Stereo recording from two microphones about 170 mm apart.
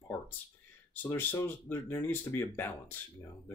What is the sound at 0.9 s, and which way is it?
Speech, 10° left (ahead or behind).